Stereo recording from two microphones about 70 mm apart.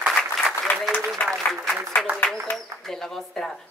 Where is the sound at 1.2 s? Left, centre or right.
Centre.